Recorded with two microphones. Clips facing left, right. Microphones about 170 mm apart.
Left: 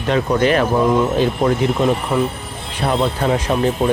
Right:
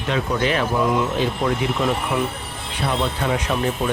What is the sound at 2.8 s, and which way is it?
Speech, 40° left (ahead or behind).